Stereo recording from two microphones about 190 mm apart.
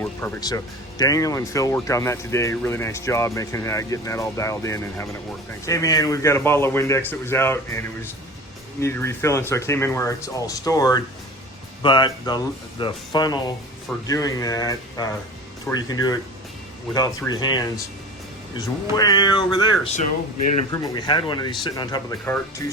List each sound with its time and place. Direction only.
0.0 s speech: 15° left (ahead or behind)
22.2 s speech: 10° left (ahead or behind)